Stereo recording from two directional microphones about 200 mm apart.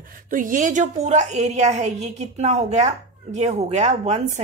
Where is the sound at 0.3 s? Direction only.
40° right (ahead or behind).